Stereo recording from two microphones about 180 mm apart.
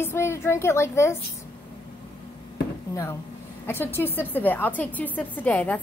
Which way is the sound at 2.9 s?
15° left (ahead or behind).